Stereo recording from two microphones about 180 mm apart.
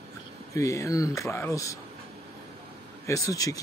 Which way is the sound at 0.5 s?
15° left (ahead or behind).